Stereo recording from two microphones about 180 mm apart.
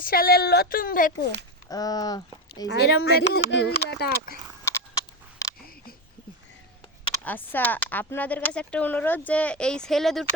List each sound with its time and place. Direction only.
0.0 s a woman's voice: 55° left (ahead or behind)
1.7 s speech: 20° left (ahead or behind)
2.6 s a woman's voice: 65° left (ahead or behind)
4.6 s a sound: 15° left (ahead or behind)
7.3 s speech: 10° left (ahead or behind)